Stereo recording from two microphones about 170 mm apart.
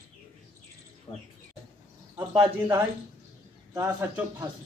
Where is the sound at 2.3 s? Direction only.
15° right (ahead or behind).